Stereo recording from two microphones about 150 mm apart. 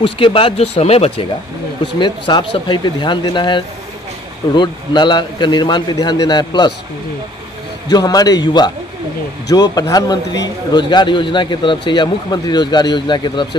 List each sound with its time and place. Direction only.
0.0 s speech: 35° left (ahead or behind)
2.0 s a man's voice: 30° left (ahead or behind)
7.9 s a man's voice: 25° left (ahead or behind)